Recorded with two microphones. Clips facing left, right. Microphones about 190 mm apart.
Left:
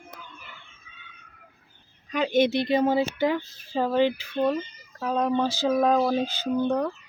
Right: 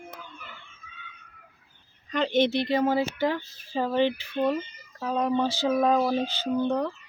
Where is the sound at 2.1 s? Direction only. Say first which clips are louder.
Left 1 dB; 10° left (ahead or behind).